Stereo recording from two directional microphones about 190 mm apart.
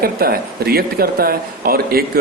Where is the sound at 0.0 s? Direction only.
50° right (ahead or behind).